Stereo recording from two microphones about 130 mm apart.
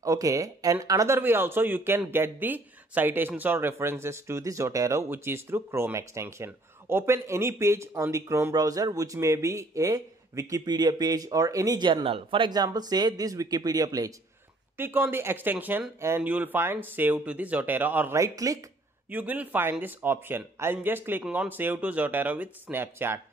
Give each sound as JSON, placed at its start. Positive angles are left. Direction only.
{"t": 0.0, "sound": "speech", "side_deg": -25}
{"t": 14.8, "sound": "speech", "side_deg": -15}
{"t": 19.0, "sound": "speech", "side_deg": -10}